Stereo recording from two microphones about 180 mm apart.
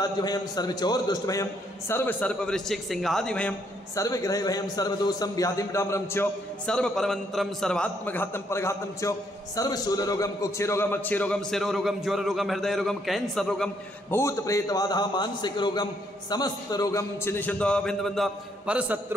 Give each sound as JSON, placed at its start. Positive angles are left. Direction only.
{"t": 0.0, "sound": "a man's voice", "side_deg": 20}
{"t": 3.9, "sound": "a man's voice", "side_deg": 20}
{"t": 14.1, "sound": "a man's voice", "side_deg": 15}